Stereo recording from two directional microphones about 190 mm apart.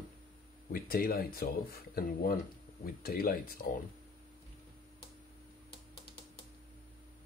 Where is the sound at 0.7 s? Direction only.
50° left (ahead or behind).